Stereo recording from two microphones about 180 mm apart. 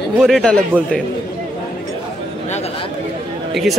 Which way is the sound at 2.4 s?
40° left (ahead or behind).